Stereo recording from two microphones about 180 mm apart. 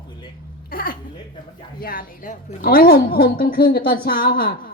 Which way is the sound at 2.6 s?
60° left (ahead or behind).